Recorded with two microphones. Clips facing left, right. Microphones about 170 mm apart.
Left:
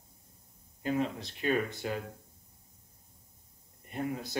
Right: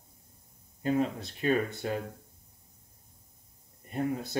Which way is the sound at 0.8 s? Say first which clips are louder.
Right 3 dB; 40° right (ahead or behind).